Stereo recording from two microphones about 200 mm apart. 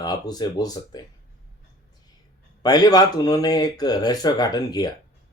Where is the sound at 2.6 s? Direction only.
20° left (ahead or behind).